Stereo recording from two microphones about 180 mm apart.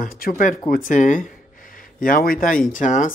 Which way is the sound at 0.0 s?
50° left (ahead or behind).